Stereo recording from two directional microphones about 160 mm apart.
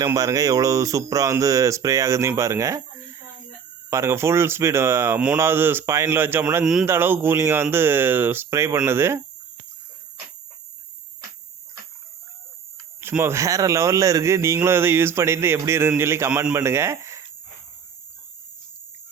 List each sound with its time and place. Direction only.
0.0 s speech: 20° right (ahead or behind)
3.8 s speech: 15° right (ahead or behind)
13.0 s speech: 15° right (ahead or behind)